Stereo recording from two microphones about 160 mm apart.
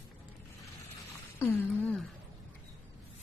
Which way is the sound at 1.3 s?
10° left (ahead or behind).